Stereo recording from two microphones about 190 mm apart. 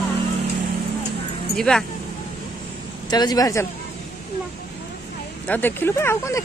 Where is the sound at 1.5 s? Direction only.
5° left (ahead or behind).